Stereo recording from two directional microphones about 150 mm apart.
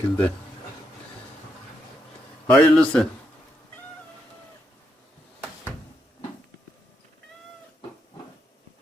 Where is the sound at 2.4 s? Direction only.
10° left (ahead or behind).